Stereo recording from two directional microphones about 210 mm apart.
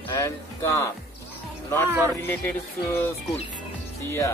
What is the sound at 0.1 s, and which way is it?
Speech, 15° left (ahead or behind).